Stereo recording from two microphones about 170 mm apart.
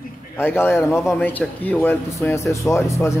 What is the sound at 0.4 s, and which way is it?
A man's voice, 15° left (ahead or behind).